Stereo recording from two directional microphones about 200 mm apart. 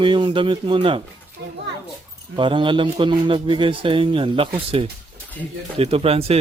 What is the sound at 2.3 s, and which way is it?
A man's voice, 25° right (ahead or behind).